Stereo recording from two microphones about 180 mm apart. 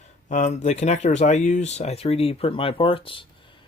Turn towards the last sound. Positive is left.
turn(degrees=30)  # may be behind; listen again after turning